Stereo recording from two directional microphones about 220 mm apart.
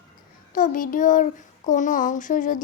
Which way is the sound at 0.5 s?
40° left (ahead or behind).